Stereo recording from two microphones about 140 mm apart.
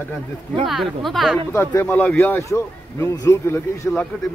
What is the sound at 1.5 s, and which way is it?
A man's voice, 15° left (ahead or behind).